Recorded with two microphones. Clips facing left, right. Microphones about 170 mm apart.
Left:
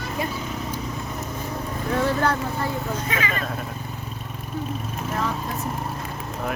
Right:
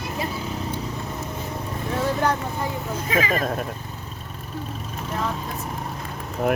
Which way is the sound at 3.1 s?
35° right (ahead or behind).